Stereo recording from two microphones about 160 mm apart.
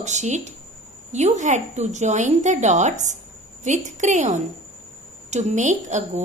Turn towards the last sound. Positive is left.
turn(degrees=-50)  # may be behind; listen again after turning